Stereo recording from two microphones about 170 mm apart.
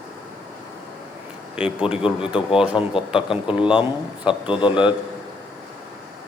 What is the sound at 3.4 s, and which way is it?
A man's voice, 30° left (ahead or behind).